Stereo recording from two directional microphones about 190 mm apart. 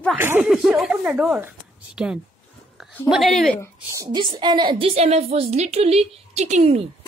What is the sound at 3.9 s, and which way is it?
A woman's voice, 20° right (ahead or behind).